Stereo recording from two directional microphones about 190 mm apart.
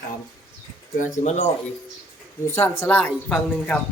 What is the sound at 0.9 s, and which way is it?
Speech, 40° left (ahead or behind).